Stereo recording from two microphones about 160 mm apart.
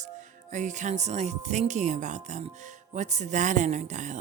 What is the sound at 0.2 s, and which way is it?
Speech, 50° right (ahead or behind).